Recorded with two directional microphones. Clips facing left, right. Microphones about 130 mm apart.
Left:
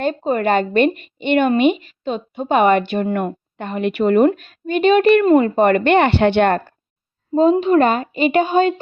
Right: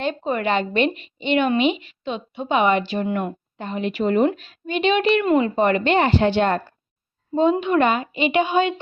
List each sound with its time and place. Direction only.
0.0 s a woman's voice: 40° left (ahead or behind); by 4.3 s 60° left (ahead or behind)
4.3 s a woman's voice: 45° left (ahead or behind)
7.6 s a woman's voice: 35° left (ahead or behind)